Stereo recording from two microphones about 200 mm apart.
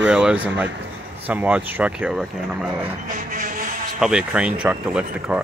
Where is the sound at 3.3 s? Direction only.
45° right (ahead or behind).